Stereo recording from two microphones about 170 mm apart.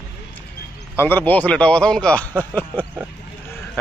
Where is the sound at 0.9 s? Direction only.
10° left (ahead or behind).